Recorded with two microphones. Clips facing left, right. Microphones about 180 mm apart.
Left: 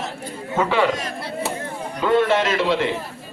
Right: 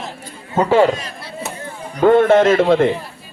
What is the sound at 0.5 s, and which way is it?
Speech, 40° right (ahead or behind).